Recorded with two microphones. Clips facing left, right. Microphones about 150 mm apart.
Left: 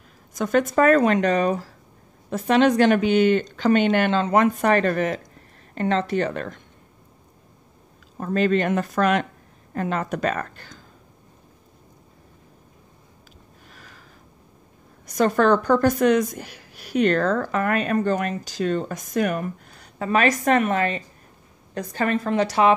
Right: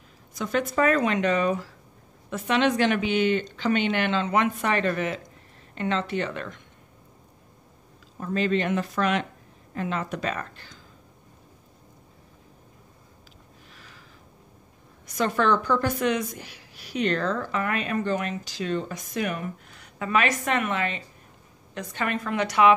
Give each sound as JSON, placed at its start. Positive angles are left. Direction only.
{"t": 0.3, "sound": "a woman's voice", "side_deg": 45}
{"t": 8.2, "sound": "a woman's voice", "side_deg": 50}
{"t": 13.7, "sound": "a sound", "side_deg": 45}
{"t": 15.0, "sound": "a woman's voice", "side_deg": 40}